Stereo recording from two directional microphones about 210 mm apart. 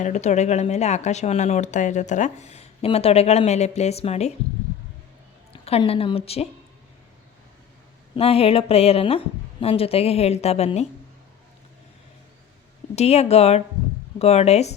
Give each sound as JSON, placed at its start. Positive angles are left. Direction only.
{"t": 0.0, "sound": "speech", "side_deg": 35}
{"t": 5.6, "sound": "a woman's voice", "side_deg": 30}
{"t": 8.1, "sound": "a woman's voice", "side_deg": 25}
{"t": 13.0, "sound": "a woman's voice", "side_deg": 30}